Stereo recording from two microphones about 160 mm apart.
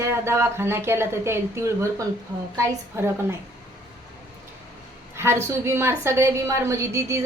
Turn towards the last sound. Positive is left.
turn(degrees=-20)  # may be behind; listen again after turning